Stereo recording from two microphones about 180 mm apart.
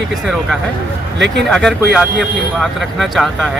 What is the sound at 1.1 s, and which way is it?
Speech, 75° right (ahead or behind).